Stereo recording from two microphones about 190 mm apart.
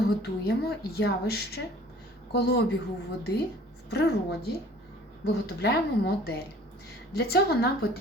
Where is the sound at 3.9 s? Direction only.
60° left (ahead or behind).